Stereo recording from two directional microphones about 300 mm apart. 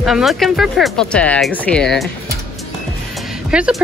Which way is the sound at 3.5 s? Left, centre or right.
Centre.